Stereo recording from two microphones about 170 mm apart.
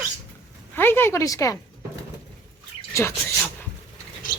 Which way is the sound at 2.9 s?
15° left (ahead or behind).